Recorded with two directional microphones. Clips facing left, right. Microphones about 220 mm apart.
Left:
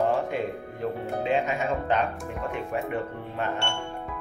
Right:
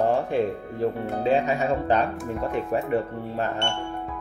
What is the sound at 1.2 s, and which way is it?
Speech, 35° right (ahead or behind).